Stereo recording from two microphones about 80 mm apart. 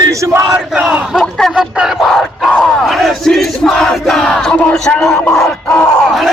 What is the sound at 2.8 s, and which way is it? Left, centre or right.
Battle cry, centre.